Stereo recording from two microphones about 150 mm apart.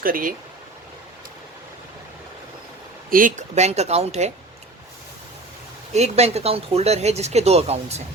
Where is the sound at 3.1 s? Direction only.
65° right (ahead or behind); by 4.3 s 45° right (ahead or behind).